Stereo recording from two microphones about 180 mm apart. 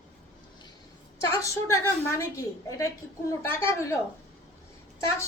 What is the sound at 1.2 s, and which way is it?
A woman's voice, 15° left (ahead or behind).